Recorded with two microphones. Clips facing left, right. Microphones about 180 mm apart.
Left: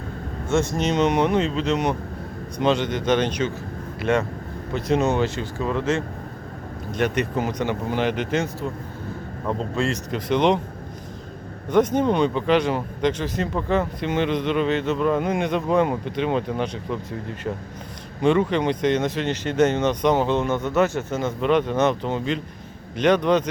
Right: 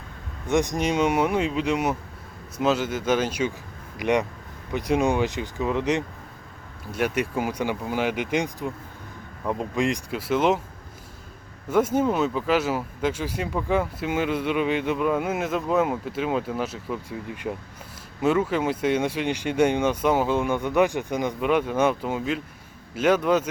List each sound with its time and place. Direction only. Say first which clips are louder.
0.4 s speech: left 1 dB; 15° right (ahead or behind)
11.7 s speech: left 2 dB; 5° right (ahead or behind)